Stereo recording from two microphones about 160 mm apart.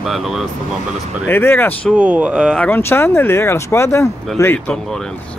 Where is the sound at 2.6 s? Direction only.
15° left (ahead or behind).